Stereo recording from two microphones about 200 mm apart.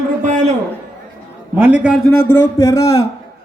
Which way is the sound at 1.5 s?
10° right (ahead or behind).